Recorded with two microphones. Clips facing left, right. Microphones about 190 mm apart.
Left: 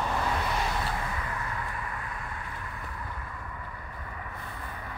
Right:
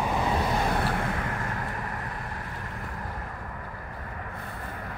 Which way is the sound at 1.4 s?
50° right (ahead or behind).